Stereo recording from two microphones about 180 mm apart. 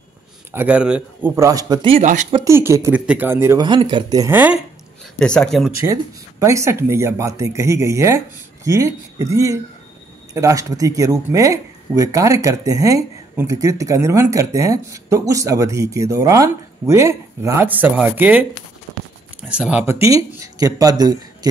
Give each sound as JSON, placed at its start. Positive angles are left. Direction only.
{"t": 0.5, "sound": "speech", "side_deg": -10}
{"t": 2.4, "sound": "speech", "side_deg": -15}
{"t": 3.6, "sound": "speech", "side_deg": -25}
{"t": 5.2, "sound": "speech", "side_deg": 5}
{"t": 6.4, "sound": "speech", "side_deg": -15}
{"t": 19.5, "sound": "speech", "side_deg": -5}
{"t": 19.9, "sound": "speech", "side_deg": -15}